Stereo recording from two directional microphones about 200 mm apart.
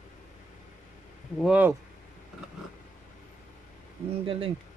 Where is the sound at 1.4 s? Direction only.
5° right (ahead or behind).